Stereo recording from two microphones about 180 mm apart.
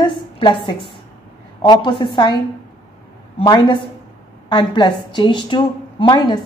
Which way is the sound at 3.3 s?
25° left (ahead or behind).